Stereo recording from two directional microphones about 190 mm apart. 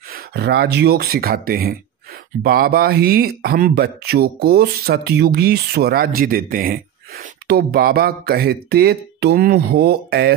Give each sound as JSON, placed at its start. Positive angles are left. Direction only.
{"t": 0.1, "sound": "speech", "side_deg": -60}